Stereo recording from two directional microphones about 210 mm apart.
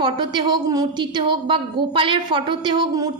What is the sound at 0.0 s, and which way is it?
A woman's voice, 20° right (ahead or behind).